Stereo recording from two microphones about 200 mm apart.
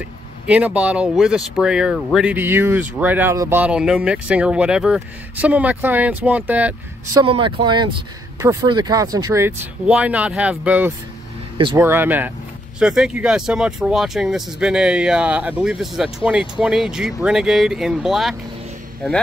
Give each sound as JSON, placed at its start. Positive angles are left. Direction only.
{"t": 0.5, "sound": "speech", "side_deg": -5}
{"t": 7.2, "sound": "speech", "side_deg": -25}